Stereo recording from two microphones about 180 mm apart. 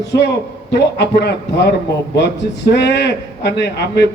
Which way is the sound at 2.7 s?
75° left (ahead or behind).